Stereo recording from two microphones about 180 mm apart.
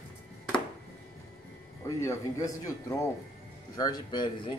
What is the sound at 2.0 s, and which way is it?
A man's voice, 20° left (ahead or behind).